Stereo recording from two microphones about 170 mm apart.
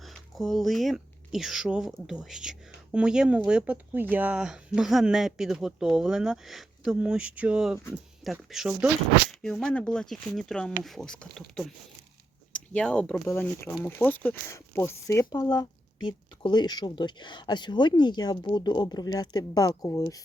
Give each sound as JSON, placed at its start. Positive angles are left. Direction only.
{"t": 0.0, "sound": "speech", "side_deg": 0}